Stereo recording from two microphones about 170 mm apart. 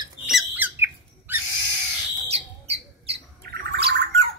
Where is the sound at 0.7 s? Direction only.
10° right (ahead or behind).